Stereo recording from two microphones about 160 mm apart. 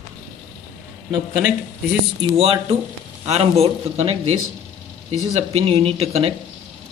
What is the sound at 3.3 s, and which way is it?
Speech, 40° right (ahead or behind).